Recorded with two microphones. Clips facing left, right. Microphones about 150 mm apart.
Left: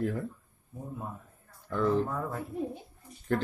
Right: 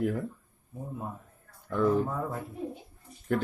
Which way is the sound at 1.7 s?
10° right (ahead or behind).